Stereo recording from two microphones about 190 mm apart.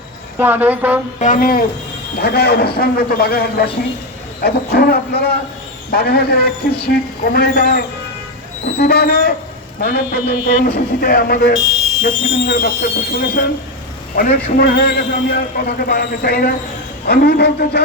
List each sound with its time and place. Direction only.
0.3 s speech: 10° right (ahead or behind)
1.2 s a man's voice: 45° left (ahead or behind)
2.2 s a man's voice: 55° left (ahead or behind)